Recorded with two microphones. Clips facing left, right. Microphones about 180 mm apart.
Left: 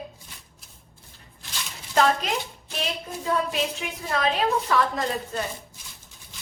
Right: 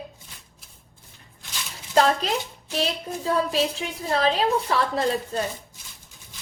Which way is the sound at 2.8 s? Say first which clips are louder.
Right 4 dB; 35° right (ahead or behind).